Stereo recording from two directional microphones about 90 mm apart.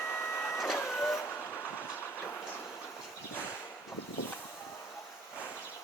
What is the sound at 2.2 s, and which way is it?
Train, 25° left (ahead or behind).